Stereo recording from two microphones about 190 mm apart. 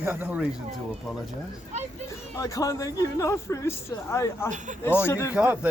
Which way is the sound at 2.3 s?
15° left (ahead or behind).